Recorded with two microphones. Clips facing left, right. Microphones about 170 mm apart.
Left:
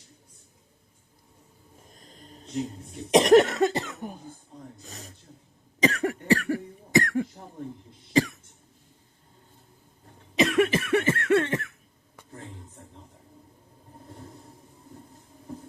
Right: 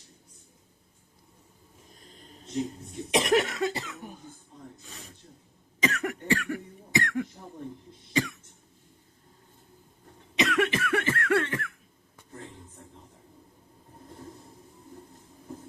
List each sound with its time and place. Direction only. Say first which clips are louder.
3.1 s cough: left 8 dB; 40° left (ahead or behind)
4.8 s a sound: left 3 dB; 40° left (ahead or behind)
5.8 s cough: left 5 dB; 35° left (ahead or behind)
10.3 s cough: left 4 dB; 30° left (ahead or behind)